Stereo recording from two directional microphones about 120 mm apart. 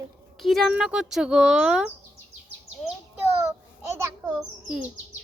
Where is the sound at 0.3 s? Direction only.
Centre (ahead or behind).